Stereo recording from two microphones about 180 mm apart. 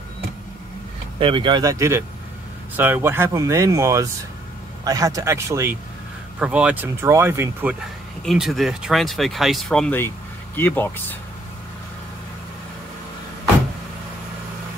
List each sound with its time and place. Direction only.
1.2 s speech: 25° right (ahead or behind); by 7.7 s 10° right (ahead or behind)
8.3 s speech: centre (ahead or behind)